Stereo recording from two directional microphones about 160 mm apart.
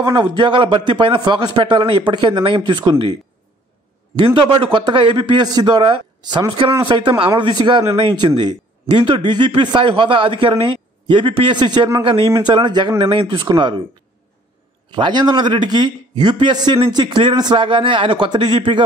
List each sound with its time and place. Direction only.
0.0 s a man's voice: 25° right (ahead or behind)
4.3 s a man's voice: 30° right (ahead or behind)
14.9 s a man's voice: 30° right (ahead or behind)